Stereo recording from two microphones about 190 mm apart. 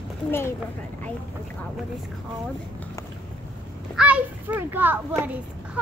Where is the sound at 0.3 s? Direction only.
15° left (ahead or behind).